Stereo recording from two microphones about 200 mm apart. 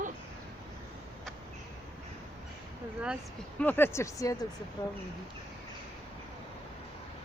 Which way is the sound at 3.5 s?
10° left (ahead or behind).